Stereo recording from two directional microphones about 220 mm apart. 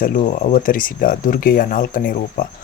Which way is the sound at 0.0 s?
35° left (ahead or behind).